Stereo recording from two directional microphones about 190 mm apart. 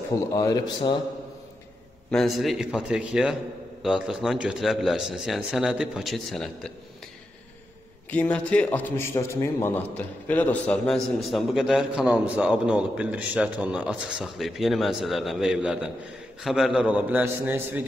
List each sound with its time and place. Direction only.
0.1 s a man's voice: 15° left (ahead or behind)
2.0 s a man's voice: centre (ahead or behind)
8.1 s a man's voice: 5° left (ahead or behind); by 17.8 s 10° right (ahead or behind)